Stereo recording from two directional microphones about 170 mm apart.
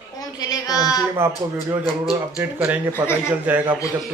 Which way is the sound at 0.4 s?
20° left (ahead or behind).